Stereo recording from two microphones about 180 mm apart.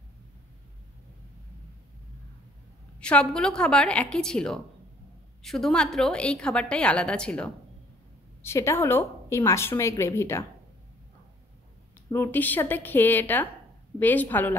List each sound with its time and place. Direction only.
3.0 s a woman's voice: 5° left (ahead or behind)
12.1 s a woman's voice: 10° left (ahead or behind)